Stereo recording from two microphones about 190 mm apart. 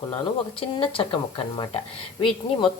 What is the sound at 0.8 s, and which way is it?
Speech, 25° left (ahead or behind).